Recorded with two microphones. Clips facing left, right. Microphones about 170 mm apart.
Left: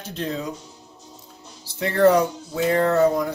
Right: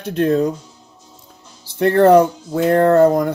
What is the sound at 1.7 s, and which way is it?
Speech, 55° right (ahead or behind).